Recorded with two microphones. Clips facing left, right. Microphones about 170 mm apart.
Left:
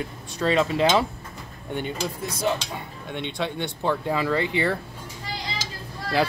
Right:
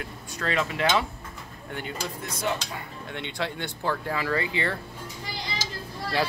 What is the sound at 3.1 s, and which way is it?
Speech, 20° left (ahead or behind).